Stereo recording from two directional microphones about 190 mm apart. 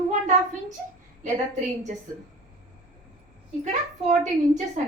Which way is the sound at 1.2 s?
40° right (ahead or behind).